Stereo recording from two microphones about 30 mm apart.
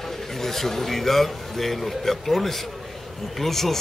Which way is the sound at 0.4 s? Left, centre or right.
Centre.